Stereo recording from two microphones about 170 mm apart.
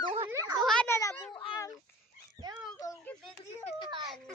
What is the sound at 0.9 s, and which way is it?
Speech, 20° left (ahead or behind).